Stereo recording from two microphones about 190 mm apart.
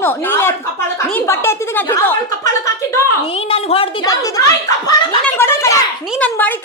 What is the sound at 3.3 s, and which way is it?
Speech, 30° left (ahead or behind).